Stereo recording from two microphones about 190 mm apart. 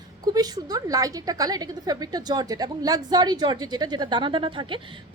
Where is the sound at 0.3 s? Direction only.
20° right (ahead or behind).